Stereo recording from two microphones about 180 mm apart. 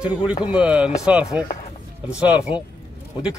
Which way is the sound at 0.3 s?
25° left (ahead or behind).